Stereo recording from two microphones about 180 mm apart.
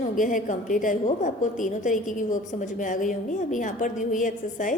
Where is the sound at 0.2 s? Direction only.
45° left (ahead or behind).